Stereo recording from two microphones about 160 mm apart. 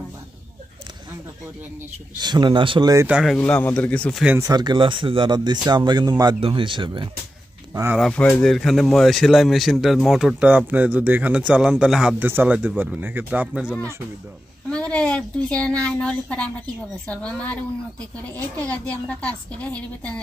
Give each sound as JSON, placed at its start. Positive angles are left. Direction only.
{"t": 2.1, "sound": "speech", "side_deg": -25}
{"t": 3.1, "sound": "speech", "side_deg": -5}
{"t": 3.3, "sound": "a woman's voice", "side_deg": 10}
{"t": 4.4, "sound": "speech", "side_deg": -25}
{"t": 8.1, "sound": "a man's voice", "side_deg": 5}
{"t": 14.7, "sound": "a woman's voice", "side_deg": 5}